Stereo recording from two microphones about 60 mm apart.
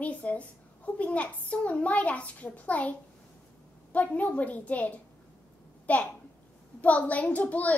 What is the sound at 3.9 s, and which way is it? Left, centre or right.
A child's voice, left.